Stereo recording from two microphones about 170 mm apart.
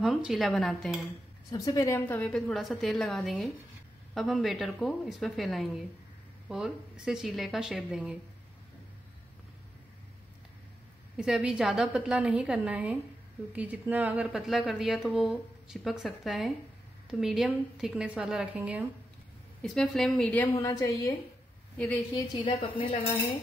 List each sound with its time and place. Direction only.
0.0 s a woman's voice: centre (ahead or behind)
1.5 s a woman's voice: 20° left (ahead or behind); by 8.2 s 5° right (ahead or behind)
11.1 s a woman's voice: 5° right (ahead or behind)
19.6 s a woman's voice: 5° left (ahead or behind)
20.5 s a woman's voice: 20° left (ahead or behind)
21.7 s a woman's voice: 10° left (ahead or behind)
22.1 s a woman's voice: 30° left (ahead or behind)